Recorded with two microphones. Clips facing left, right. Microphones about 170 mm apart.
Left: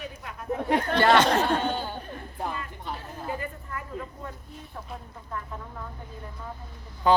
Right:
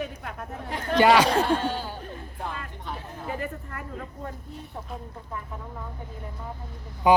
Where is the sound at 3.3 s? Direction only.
60° right (ahead or behind).